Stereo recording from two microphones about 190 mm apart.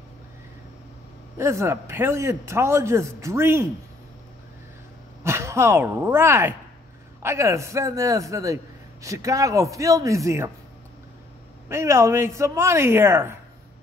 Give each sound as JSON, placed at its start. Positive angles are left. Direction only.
{"t": 1.4, "sound": "a man's voice", "side_deg": -15}
{"t": 5.2, "sound": "a man's voice", "side_deg": -15}
{"t": 11.7, "sound": "a man's voice", "side_deg": -15}